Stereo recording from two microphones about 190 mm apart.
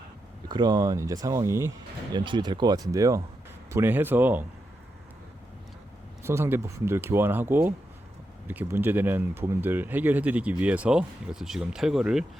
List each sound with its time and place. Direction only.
0.4 s speech: 25° right (ahead or behind)
2.1 s speech: 25° right (ahead or behind)
6.2 s speech: 15° right (ahead or behind)